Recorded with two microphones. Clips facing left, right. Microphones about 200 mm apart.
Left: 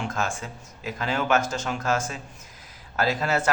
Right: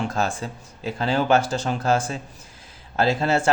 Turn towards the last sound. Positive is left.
turn(degrees=-30)  # may be behind; listen again after turning